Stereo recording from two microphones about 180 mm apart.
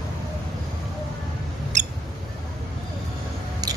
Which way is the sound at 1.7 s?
45° right (ahead or behind).